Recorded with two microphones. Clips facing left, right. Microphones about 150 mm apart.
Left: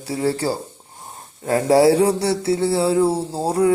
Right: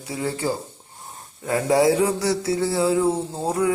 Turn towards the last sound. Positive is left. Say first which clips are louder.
# left 4 dB
turn(degrees=35)  # may be behind; listen again after turning